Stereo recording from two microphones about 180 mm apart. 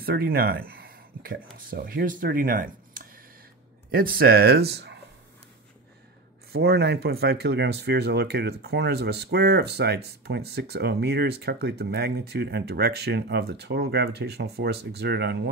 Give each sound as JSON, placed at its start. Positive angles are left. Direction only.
{"t": 0.0, "sound": "speech", "side_deg": -55}
{"t": 6.5, "sound": "speech", "side_deg": -65}